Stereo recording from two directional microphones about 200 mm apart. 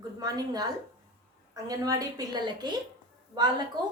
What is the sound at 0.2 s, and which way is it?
Speech, 20° right (ahead or behind).